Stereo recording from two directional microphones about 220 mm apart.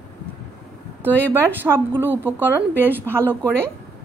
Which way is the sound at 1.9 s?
10° right (ahead or behind).